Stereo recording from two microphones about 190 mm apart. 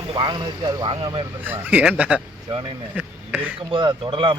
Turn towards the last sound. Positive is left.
turn(degrees=-25)  # may be behind; listen again after turning